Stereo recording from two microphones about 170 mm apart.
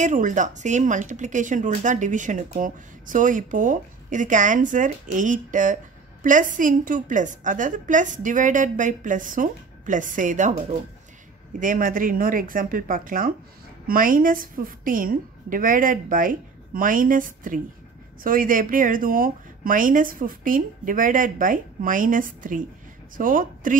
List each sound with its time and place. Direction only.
0.0 s speech: 50° right (ahead or behind)
11.6 s speech: 55° right (ahead or behind)